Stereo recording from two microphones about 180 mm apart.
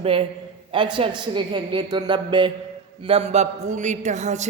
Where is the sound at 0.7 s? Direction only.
25° right (ahead or behind).